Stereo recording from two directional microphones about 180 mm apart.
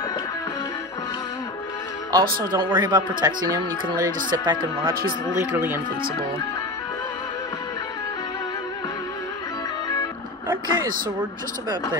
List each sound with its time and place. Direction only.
2.5 s speech: 25° right (ahead or behind)
10.5 s speech: 15° right (ahead or behind)